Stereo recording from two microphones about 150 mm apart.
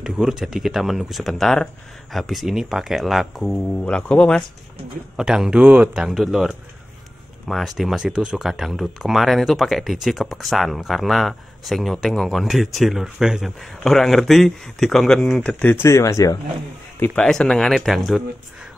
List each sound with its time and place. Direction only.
0.0 s speech: 5° right (ahead or behind); by 16.3 s 20° left (ahead or behind)
17.0 s speech: 5° left (ahead or behind)